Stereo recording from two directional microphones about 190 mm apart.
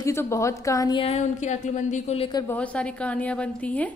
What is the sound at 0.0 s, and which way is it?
A woman's voice, 15° left (ahead or behind).